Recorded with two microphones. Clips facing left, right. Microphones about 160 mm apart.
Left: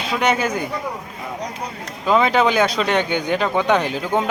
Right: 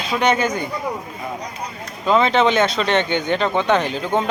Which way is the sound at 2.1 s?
10° left (ahead or behind).